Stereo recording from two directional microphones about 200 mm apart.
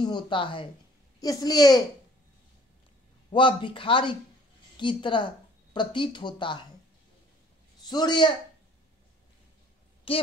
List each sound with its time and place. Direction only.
0.0 s speech: 25° left (ahead or behind)
3.3 s a woman's voice: 25° left (ahead or behind)
7.9 s speech: 20° left (ahead or behind)
10.1 s speech: 25° left (ahead or behind)